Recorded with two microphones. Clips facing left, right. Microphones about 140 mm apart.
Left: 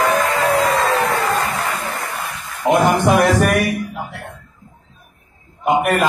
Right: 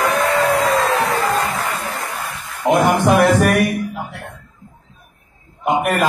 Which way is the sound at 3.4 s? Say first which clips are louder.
Right 1 dB; centre (ahead or behind).